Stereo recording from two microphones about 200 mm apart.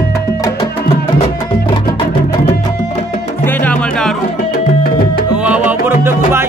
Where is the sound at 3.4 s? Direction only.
5° left (ahead or behind).